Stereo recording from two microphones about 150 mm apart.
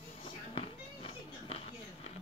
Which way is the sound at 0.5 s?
40° left (ahead or behind).